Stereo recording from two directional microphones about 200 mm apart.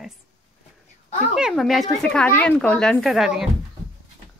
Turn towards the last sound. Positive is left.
turn(degrees=0)  # may be behind; listen again after turning